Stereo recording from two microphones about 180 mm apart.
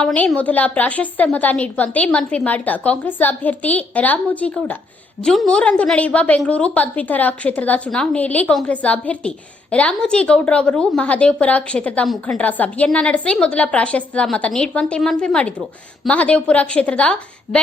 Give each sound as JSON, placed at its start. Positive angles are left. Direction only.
{"t": 0.0, "sound": "a woman's voice", "side_deg": 5}